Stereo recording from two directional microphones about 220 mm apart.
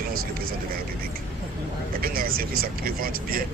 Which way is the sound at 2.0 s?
40° right (ahead or behind).